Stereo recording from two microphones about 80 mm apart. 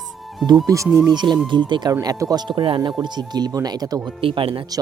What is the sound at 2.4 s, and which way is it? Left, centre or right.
Speech, right.